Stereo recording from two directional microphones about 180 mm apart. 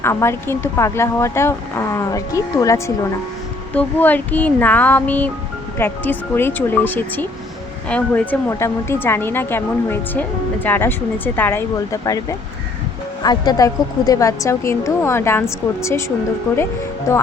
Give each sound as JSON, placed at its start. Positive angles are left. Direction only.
{"t": 0.0, "sound": "speech", "side_deg": 15}
{"t": 13.2, "sound": "speech", "side_deg": 25}